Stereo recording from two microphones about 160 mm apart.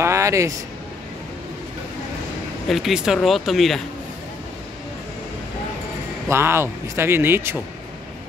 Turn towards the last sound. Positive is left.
turn(degrees=-15)  # may be behind; listen again after turning